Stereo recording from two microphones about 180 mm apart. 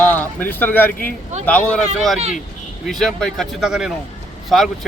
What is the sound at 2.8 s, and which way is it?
Speech, centre (ahead or behind).